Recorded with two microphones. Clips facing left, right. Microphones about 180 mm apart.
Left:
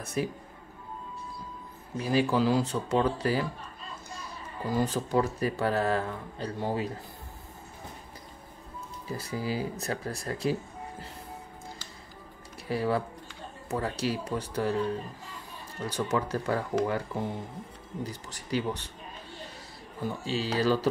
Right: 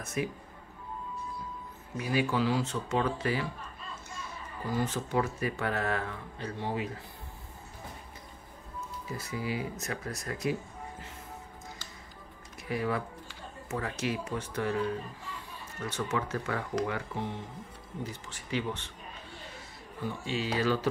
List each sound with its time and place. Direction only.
0.0 s speech: 35° left (ahead or behind)
2.0 s speech: 35° left (ahead or behind)
4.7 s speech: 35° left (ahead or behind)
9.1 s speech: 35° left (ahead or behind)
12.6 s speech: 35° left (ahead or behind)
15.8 s speech: 35° left (ahead or behind)
20.2 s speech: 35° left (ahead or behind)